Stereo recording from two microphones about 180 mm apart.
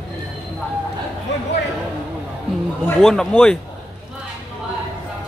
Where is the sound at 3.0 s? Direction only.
5° left (ahead or behind).